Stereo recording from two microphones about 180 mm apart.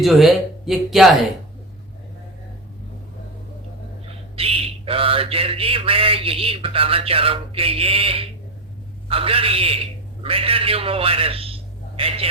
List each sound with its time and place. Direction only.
0.0 s speech: centre (ahead or behind)
4.4 s mantra: 30° right (ahead or behind)
10.2 s a man's voice: 30° right (ahead or behind)